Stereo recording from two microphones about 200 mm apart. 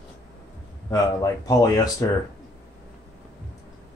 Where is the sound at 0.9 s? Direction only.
20° left (ahead or behind).